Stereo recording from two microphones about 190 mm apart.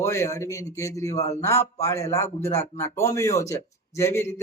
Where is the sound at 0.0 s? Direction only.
15° left (ahead or behind).